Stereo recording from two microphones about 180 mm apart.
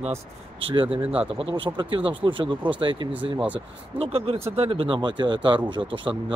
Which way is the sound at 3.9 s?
30° right (ahead or behind).